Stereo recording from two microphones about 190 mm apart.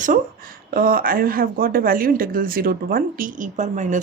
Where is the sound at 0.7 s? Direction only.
50° right (ahead or behind).